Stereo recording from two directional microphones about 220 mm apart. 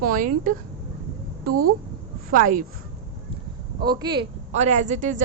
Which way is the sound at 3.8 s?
20° right (ahead or behind).